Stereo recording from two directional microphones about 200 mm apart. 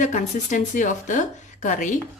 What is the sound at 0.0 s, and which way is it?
Speech, 40° left (ahead or behind).